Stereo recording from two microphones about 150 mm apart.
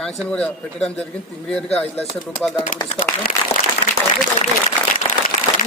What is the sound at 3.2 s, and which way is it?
Speech, 85° left.